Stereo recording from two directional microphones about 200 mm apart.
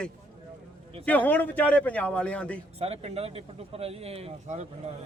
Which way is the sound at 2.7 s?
30° right (ahead or behind).